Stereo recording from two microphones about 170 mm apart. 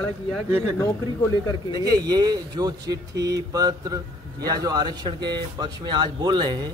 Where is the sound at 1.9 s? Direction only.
25° right (ahead or behind).